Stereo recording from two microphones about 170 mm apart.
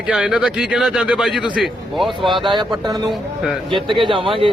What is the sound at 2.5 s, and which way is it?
A man's voice, 25° right (ahead or behind).